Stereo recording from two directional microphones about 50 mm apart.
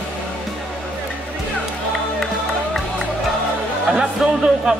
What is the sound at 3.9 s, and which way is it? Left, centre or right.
Music, centre.